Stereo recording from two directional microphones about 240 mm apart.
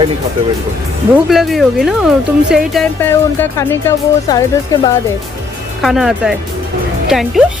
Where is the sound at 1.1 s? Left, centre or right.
Centre.